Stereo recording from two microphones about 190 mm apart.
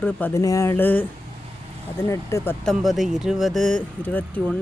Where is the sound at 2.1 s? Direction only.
15° left (ahead or behind).